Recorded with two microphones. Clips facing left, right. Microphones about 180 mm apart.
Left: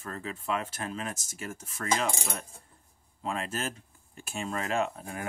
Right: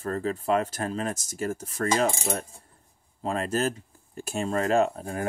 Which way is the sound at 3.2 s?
40° right (ahead or behind).